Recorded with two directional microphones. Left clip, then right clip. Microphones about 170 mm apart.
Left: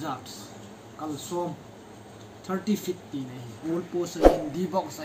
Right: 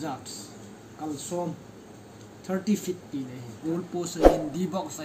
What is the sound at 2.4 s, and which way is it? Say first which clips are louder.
Speech: right 1 dB; 5° right (ahead or behind).